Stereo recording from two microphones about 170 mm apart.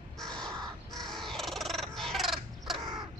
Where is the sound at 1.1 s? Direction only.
Centre (ahead or behind).